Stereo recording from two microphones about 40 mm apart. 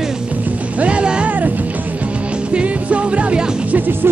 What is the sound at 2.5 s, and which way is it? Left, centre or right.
Music, right.